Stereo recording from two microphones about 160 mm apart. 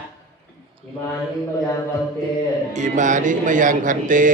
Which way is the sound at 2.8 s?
50° right (ahead or behind).